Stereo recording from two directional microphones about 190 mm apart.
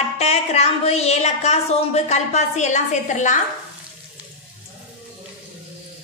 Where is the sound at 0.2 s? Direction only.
35° left (ahead or behind).